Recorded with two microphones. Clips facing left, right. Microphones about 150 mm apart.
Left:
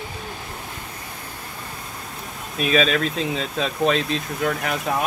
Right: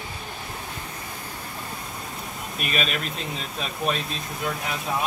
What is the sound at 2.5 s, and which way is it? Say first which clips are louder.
Speech: left 9 dB; 5° right (ahead or behind).